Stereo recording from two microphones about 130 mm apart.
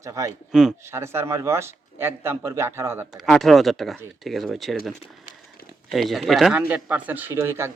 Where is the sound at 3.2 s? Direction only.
Centre (ahead or behind).